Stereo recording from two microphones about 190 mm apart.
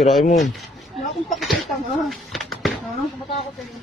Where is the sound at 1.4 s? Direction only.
Centre (ahead or behind).